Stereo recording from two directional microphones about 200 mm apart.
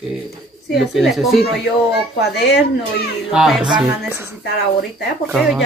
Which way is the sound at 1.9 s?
55° left (ahead or behind).